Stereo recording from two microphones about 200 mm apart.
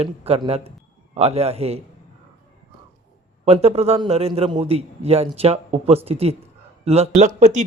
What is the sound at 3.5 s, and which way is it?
Speech, 30° right (ahead or behind).